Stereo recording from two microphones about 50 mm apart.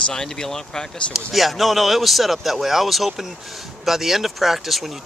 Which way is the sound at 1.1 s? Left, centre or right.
Centre.